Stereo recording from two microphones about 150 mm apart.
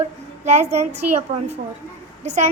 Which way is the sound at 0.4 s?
50° right (ahead or behind).